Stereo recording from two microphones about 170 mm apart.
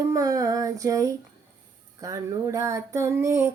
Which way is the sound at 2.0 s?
20° right (ahead or behind).